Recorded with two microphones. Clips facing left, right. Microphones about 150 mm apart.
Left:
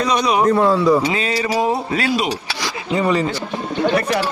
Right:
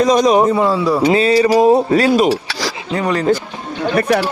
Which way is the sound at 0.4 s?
5° right (ahead or behind).